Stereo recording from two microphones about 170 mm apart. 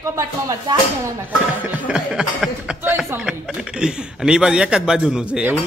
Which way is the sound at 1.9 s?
5° right (ahead or behind).